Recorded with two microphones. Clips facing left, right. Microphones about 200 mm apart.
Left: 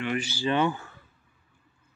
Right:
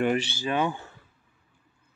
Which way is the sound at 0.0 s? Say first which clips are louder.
Right 5 dB; 40° right (ahead or behind).